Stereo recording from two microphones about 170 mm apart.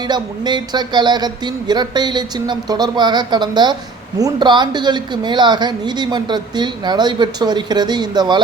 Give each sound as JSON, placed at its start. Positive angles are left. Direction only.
{"t": 0.1, "sound": "a woman's voice", "side_deg": -25}